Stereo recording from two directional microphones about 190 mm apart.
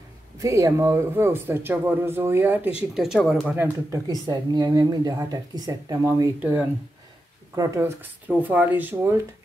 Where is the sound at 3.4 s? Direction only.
10° right (ahead or behind).